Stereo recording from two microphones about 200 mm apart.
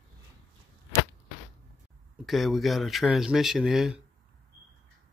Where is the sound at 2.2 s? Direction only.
Centre (ahead or behind).